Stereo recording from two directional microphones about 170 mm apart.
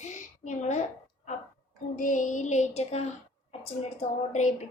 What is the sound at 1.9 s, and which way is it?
A woman's voice, 50° left (ahead or behind).